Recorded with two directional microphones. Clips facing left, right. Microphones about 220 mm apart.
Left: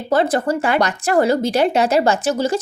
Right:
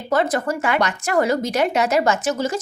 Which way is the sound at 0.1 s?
30° left (ahead or behind).